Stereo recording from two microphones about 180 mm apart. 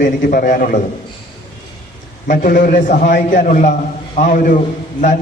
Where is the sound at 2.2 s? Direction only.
50° left (ahead or behind).